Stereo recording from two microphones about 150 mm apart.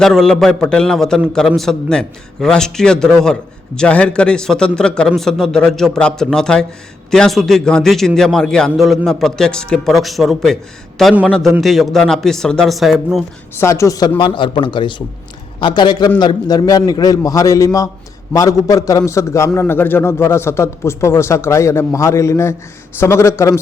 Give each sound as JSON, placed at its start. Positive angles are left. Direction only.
{"t": 0.0, "sound": "speech", "side_deg": 5}
{"t": 13.6, "sound": "a man's voice", "side_deg": 20}